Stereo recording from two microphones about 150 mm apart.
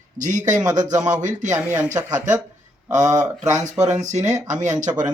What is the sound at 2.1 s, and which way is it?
Speech, 55° right (ahead or behind).